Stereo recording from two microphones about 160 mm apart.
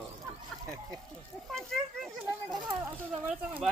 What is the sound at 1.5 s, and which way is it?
Speech, centre (ahead or behind).